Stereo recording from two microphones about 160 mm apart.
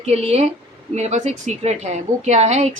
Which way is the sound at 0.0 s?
40° right (ahead or behind).